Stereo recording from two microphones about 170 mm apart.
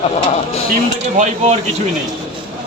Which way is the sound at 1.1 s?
45° right (ahead or behind).